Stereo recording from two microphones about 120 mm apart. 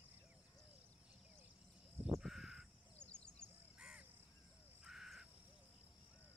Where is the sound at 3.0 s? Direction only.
10° left (ahead or behind).